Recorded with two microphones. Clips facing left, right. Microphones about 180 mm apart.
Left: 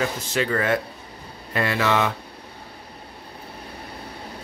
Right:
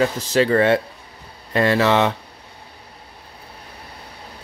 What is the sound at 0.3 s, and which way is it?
Speech, 35° right (ahead or behind).